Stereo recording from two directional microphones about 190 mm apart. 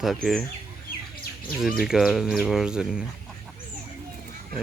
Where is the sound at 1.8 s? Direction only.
Centre (ahead or behind).